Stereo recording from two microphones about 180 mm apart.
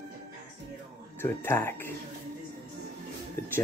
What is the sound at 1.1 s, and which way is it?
Speech, 15° left (ahead or behind).